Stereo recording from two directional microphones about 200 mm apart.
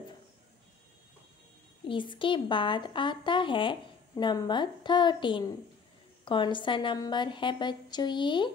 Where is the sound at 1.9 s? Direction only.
25° left (ahead or behind).